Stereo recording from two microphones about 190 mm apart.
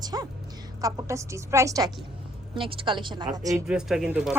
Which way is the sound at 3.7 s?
5° right (ahead or behind).